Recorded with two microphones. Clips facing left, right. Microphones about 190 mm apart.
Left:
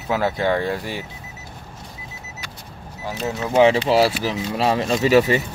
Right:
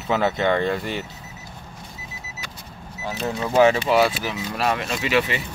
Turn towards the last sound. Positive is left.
turn(degrees=40)  # may be behind; listen again after turning